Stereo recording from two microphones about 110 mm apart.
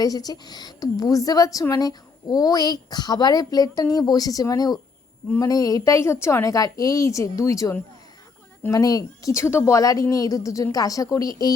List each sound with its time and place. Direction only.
0.0 s a woman's voice: 35° left (ahead or behind)